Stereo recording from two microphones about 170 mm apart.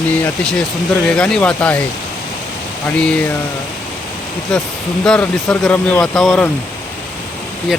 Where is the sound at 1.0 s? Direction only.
5° left (ahead or behind).